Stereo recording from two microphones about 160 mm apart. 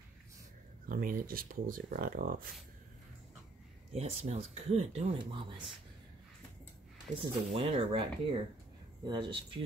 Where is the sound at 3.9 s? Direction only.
40° right (ahead or behind).